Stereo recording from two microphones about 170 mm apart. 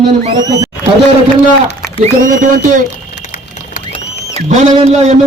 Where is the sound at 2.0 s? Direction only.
50° right (ahead or behind).